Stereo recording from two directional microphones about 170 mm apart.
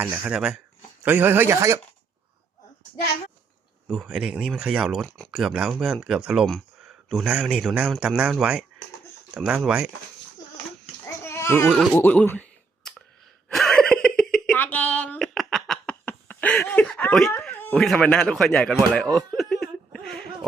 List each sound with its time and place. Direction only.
0.2 s speech: 5° right (ahead or behind)
3.8 s speech: 5° right (ahead or behind)
11.0 s babbling: 15° left (ahead or behind)
11.9 s a sound: 10° left (ahead or behind)
17.4 s speech: 5° left (ahead or behind)